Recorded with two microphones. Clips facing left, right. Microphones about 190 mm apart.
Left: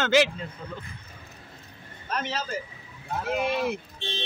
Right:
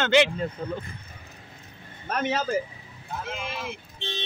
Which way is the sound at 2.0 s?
50° right (ahead or behind).